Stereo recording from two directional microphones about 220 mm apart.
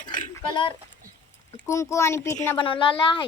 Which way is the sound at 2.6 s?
25° left (ahead or behind).